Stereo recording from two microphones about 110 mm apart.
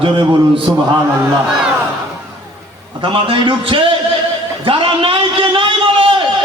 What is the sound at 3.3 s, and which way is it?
Speech, 50° right (ahead or behind).